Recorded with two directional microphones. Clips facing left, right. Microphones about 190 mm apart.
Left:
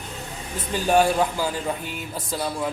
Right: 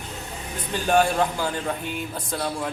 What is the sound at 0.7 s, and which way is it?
Speech, 5° left (ahead or behind).